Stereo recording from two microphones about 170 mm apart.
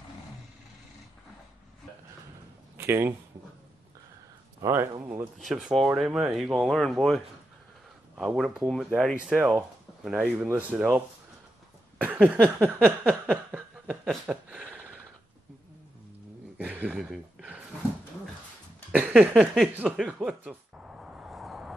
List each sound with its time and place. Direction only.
2.8 s speech: 15° right (ahead or behind)
4.6 s speech: 20° right (ahead or behind)
5.4 s speech: 5° right (ahead or behind)
8.2 s speech: 5° right (ahead or behind)
12.0 s a sound: 10° right (ahead or behind)
12.5 s speech: 10° right (ahead or behind)
13.5 s chuckle: 10° right (ahead or behind)
16.5 s a sound: 10° right (ahead or behind)
18.9 s a sound: 10° right (ahead or behind)